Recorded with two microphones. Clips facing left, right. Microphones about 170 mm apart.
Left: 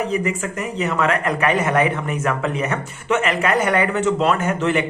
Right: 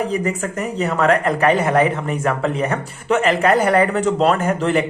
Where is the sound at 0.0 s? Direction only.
35° right (ahead or behind).